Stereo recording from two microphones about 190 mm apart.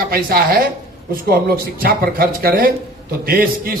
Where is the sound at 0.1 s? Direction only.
50° right (ahead or behind).